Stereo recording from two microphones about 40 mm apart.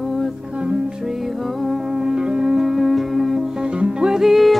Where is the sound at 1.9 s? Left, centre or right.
Centre.